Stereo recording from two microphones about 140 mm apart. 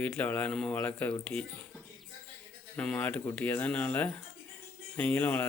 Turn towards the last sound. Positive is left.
turn(degrees=10)  # may be behind; listen again after turning